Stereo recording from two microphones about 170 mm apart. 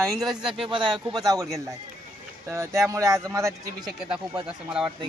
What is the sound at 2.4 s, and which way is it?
Speech, 15° right (ahead or behind).